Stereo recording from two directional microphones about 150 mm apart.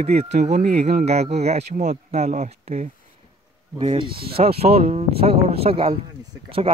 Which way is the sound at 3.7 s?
35° right (ahead or behind).